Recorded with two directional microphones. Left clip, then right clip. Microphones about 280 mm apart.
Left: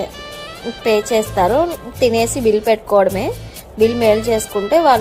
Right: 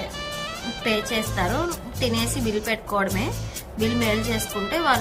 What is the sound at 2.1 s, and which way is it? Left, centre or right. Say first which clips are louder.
Speech: left 12 dB; centre.